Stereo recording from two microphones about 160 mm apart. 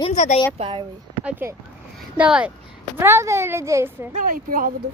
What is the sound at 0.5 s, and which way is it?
Speech, 30° right (ahead or behind).